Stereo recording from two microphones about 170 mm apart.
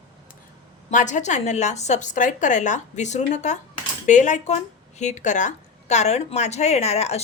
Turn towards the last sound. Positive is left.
turn(degrees=40)  # may be behind; listen again after turning